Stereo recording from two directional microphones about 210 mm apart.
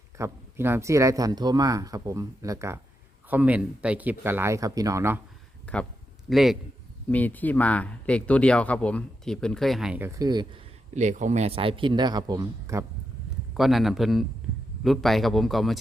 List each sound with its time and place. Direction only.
0.2 s speech: 10° right (ahead or behind)
5.7 s speech: 5° left (ahead or behind); by 10.6 s 20° right (ahead or behind)
10.9 s speech: 35° right (ahead or behind); by 12.8 s 15° right (ahead or behind)
13.5 s speech: centre (ahead or behind)